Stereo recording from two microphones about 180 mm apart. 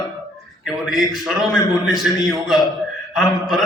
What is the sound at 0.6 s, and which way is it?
A man's voice, centre (ahead or behind).